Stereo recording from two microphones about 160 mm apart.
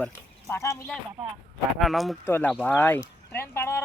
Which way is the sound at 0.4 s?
20° left (ahead or behind).